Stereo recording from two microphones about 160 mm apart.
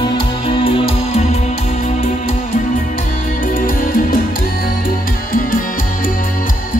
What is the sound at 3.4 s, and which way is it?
Music, 60° left (ahead or behind).